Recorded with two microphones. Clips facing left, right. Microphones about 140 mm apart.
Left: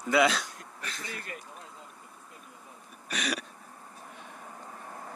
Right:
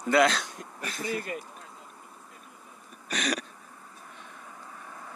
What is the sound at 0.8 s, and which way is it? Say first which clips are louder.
Speech: right 6 dB; 10° right (ahead or behind).